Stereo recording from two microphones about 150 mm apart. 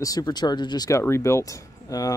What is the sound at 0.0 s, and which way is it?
Speech, 25° left (ahead or behind).